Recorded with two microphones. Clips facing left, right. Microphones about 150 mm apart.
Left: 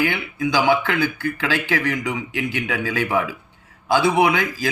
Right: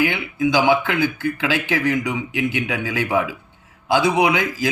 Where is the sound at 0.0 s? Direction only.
20° right (ahead or behind).